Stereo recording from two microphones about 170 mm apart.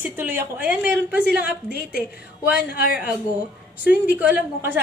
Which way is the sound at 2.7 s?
60° left (ahead or behind).